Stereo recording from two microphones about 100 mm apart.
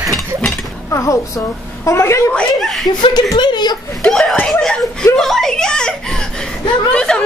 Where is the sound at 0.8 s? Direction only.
35° left (ahead or behind).